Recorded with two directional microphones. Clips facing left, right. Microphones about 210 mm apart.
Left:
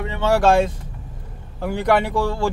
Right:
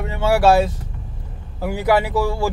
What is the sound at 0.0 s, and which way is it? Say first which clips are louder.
Speech: right 1 dB; 10° right (ahead or behind).